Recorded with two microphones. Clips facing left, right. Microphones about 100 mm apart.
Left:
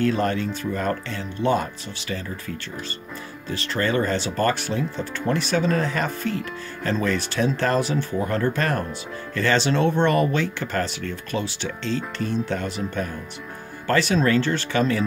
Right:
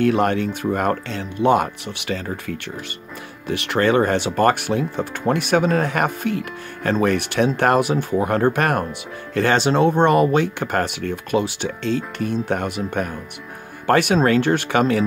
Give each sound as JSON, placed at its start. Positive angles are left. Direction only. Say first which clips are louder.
{"t": 0.0, "sound": "speech", "louder": "right 4 dB", "side_deg": -60}
{"t": 9.3, "sound": "speech", "louder": "right 4 dB", "side_deg": -55}
{"t": 13.8, "sound": "speech", "louder": "right 4 dB", "side_deg": -55}